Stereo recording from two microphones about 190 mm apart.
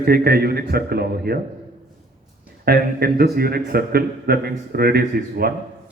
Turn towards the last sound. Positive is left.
turn(degrees=-55)  # may be behind; listen again after turning